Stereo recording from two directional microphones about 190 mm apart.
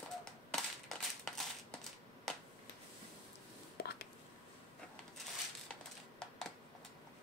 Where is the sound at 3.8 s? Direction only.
55° left (ahead or behind).